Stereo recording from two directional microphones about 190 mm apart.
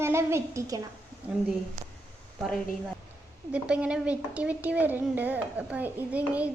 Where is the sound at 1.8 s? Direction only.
45° right (ahead or behind).